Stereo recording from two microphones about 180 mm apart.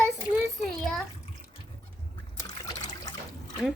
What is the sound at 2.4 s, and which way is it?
Liquid, 20° left (ahead or behind).